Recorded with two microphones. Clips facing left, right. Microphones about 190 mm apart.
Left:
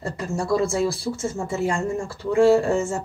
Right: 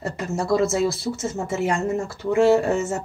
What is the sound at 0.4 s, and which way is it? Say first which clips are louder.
Speech: right 1 dB; 20° right (ahead or behind).